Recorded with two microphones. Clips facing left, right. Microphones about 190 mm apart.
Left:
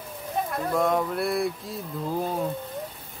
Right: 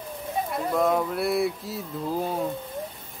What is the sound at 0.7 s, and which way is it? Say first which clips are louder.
Speech: right 1 dB; centre (ahead or behind).